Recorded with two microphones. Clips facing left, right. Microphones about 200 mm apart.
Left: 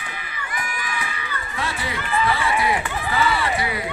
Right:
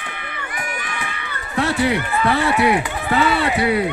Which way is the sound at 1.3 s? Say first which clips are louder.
Right 10 dB; 70° right (ahead or behind).